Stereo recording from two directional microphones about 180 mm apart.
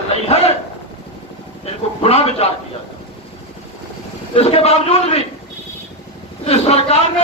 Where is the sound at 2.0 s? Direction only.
35° left (ahead or behind).